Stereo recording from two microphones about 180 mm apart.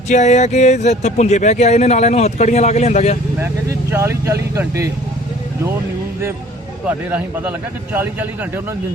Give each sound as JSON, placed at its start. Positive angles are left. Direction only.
{"t": 0.1, "sound": "speech", "side_deg": 40}
{"t": 3.4, "sound": "speech", "side_deg": -15}
{"t": 6.8, "sound": "speech", "side_deg": -10}